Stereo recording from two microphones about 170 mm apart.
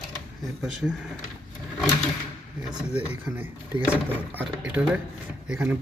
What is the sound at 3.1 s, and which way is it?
Speech, 10° right (ahead or behind).